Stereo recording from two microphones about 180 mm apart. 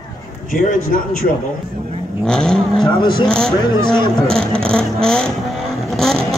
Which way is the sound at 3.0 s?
25° left (ahead or behind).